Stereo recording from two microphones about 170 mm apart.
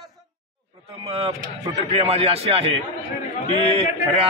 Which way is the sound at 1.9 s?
35° right (ahead or behind).